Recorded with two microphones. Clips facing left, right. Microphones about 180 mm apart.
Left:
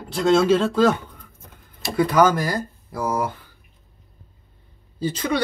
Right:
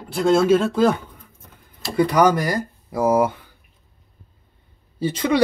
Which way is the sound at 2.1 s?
15° right (ahead or behind).